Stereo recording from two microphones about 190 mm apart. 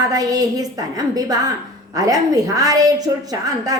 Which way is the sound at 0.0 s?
20° right (ahead or behind).